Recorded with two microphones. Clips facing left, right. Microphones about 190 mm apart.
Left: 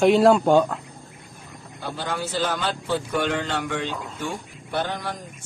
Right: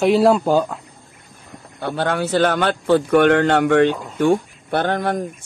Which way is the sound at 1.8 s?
65° right (ahead or behind).